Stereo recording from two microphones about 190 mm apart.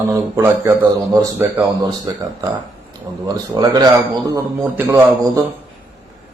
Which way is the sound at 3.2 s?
20° right (ahead or behind).